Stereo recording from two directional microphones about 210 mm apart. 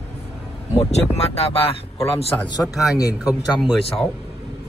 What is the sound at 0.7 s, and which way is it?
Speech, 30° left (ahead or behind).